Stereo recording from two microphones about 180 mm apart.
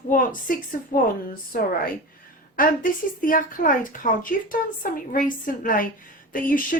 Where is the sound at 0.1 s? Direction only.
50° left (ahead or behind).